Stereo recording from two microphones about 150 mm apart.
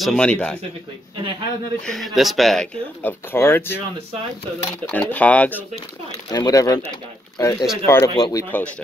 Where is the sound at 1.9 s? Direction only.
Centre (ahead or behind).